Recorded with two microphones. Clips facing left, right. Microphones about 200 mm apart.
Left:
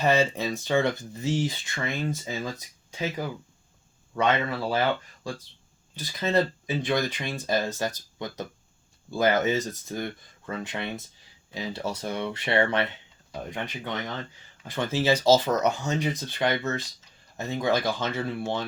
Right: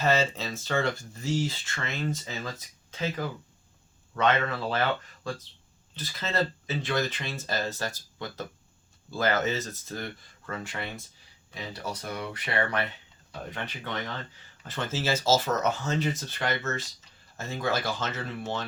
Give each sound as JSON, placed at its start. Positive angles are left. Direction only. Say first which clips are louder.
{"t": 0.0, "sound": "speech", "louder": "left 3 dB", "side_deg": 15}
{"t": 6.0, "sound": "speech", "louder": "left 5 dB", "side_deg": 15}
{"t": 14.8, "sound": "speech", "louder": "left 5 dB", "side_deg": 15}